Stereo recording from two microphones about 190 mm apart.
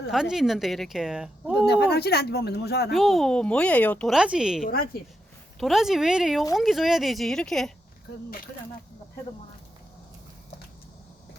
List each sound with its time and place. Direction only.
0.1 s speech: centre (ahead or behind)
1.6 s speech: 60° left (ahead or behind)
2.9 s speech: centre (ahead or behind)
4.6 s speech: 50° left (ahead or behind)
5.5 s speech: centre (ahead or behind)